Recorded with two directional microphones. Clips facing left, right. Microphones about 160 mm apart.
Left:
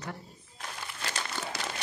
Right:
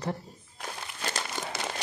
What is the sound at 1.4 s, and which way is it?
Crumpling, 15° right (ahead or behind).